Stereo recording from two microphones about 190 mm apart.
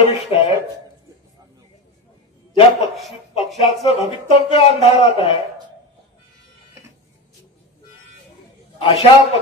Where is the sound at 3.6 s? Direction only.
35° left (ahead or behind).